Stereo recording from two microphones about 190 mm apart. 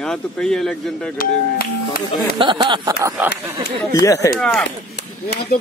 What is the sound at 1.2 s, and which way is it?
Speech, 50° left (ahead or behind).